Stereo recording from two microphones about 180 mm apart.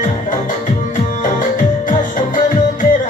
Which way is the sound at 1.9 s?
45° left (ahead or behind).